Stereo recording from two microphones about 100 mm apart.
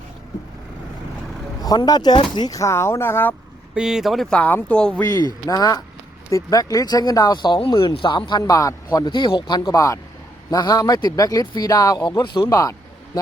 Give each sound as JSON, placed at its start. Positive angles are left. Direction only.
{"t": 1.6, "sound": "speech", "side_deg": 40}
{"t": 3.8, "sound": "speech", "side_deg": -5}
{"t": 4.4, "sound": "speech", "side_deg": 15}
{"t": 4.9, "sound": "speech", "side_deg": 40}
{"t": 7.6, "sound": "speech", "side_deg": 60}
{"t": 12.0, "sound": "speech", "side_deg": 50}
{"t": 12.5, "sound": "speech", "side_deg": 35}